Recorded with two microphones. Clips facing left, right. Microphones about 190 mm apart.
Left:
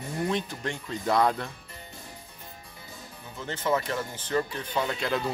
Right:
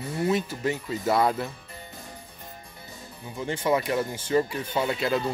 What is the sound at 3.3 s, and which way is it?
Speech, 10° right (ahead or behind).